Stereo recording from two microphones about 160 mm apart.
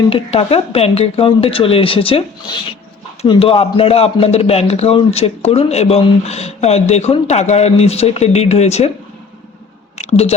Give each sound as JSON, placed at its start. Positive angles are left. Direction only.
{"t": 0.1, "sound": "speech", "side_deg": 40}
{"t": 10.0, "sound": "speech", "side_deg": 40}